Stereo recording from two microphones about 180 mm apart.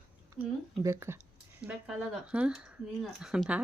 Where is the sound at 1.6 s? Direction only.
5° right (ahead or behind).